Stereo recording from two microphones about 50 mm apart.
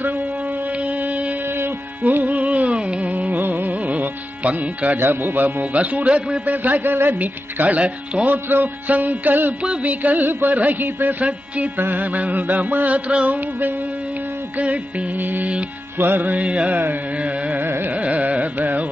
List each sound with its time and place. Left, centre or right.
0.8 s music: right
1.6 s carnatic music: right
3.3 s music: right
4.9 s a man's voice: right
8.3 s a man's voice: right
9.6 s a man's voice: right
11.2 s music: right
11.8 s a man's voice: right
14.6 s music: right
16.0 s a man's voice: right
16.4 s music: right
17.5 s carnatic music: right
17.9 s carnatic music: right